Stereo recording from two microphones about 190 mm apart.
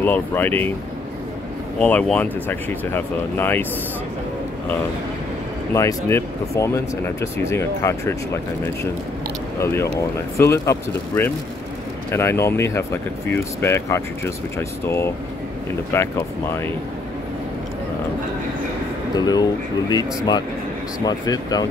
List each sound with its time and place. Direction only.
0.0 s speech: 10° left (ahead or behind)
1.8 s speech: 5° left (ahead or behind)
5.7 s speech: 15° left (ahead or behind)
9.6 s speech: 15° left (ahead or behind)
19.1 s speech: 20° left (ahead or behind)
21.0 s speech: 20° left (ahead or behind)